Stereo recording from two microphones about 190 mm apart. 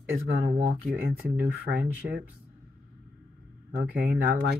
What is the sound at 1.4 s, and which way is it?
Speech, 55° right (ahead or behind).